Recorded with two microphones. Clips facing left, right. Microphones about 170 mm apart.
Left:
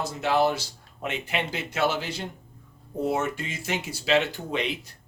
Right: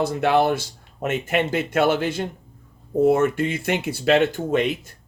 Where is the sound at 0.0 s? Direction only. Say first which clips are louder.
Right 5 dB; 60° right (ahead or behind).